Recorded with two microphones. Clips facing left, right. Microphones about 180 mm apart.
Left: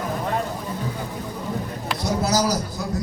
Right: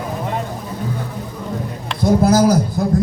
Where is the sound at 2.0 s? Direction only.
50° right (ahead or behind).